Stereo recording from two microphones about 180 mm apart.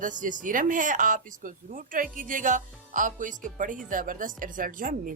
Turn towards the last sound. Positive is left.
turn(degrees=-50)  # may be behind; listen again after turning